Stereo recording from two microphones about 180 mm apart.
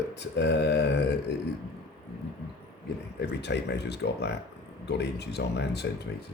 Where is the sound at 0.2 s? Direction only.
70° left (ahead or behind).